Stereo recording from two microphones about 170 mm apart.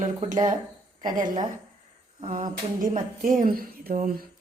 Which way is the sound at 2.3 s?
50° right (ahead or behind).